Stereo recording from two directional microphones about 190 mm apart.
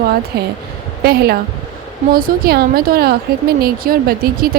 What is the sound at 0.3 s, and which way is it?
A woman's voice, 55° right (ahead or behind).